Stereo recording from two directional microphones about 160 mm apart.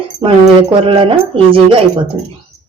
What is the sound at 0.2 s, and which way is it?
Speech, 35° right (ahead or behind).